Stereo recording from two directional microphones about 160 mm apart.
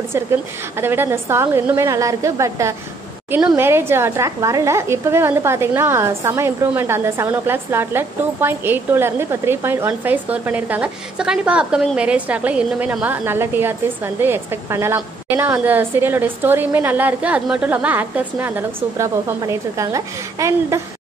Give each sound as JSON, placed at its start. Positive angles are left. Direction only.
{"t": 0.1, "sound": "a woman's voice", "side_deg": -15}